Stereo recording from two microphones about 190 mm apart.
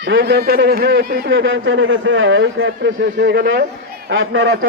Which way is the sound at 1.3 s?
90° right.